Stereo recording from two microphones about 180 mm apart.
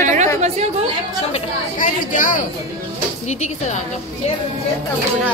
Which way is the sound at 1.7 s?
45° left (ahead or behind).